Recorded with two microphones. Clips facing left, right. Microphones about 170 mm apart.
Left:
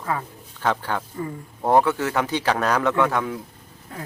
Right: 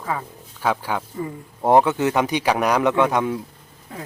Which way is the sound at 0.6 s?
10° right (ahead or behind).